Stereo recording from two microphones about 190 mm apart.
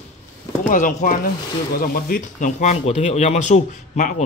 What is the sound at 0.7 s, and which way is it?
Speech, 40° left (ahead or behind).